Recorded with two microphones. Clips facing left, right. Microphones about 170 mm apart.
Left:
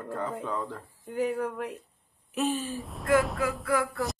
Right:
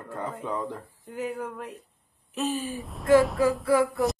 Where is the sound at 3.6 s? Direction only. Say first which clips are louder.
Right 5 dB; 25° right (ahead or behind).